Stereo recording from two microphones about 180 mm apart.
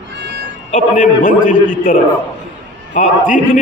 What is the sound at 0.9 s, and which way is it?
Speech, 45° left (ahead or behind).